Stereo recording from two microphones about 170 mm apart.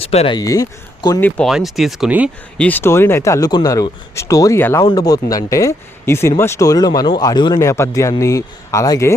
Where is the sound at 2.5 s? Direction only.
10° left (ahead or behind).